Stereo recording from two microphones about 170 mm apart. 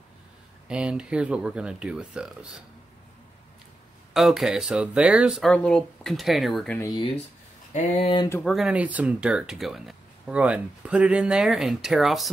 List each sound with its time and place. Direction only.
0.7 s speech: 5° right (ahead or behind)
4.1 s speech: centre (ahead or behind)
7.7 s speech: 40° left (ahead or behind)
8.5 s speech: 5° right (ahead or behind)